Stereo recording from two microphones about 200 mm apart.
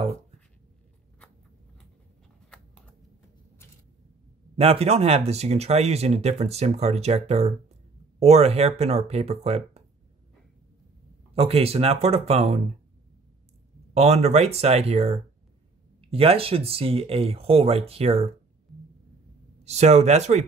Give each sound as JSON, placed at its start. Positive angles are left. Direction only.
{"t": 4.6, "sound": "speech", "side_deg": -30}
{"t": 11.3, "sound": "speech", "side_deg": -30}
{"t": 13.9, "sound": "speech", "side_deg": -30}
{"t": 19.6, "sound": "speech", "side_deg": -35}